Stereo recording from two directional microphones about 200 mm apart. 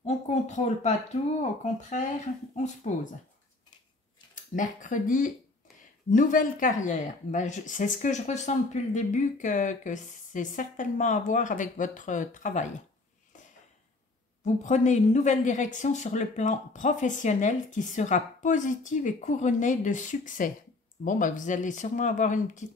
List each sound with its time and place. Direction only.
0.0 s speech: 35° left (ahead or behind)
4.6 s speech: 40° left (ahead or behind)
14.4 s speech: 35° left (ahead or behind)